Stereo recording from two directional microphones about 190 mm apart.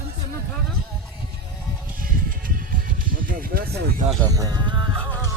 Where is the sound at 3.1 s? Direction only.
50° right (ahead or behind).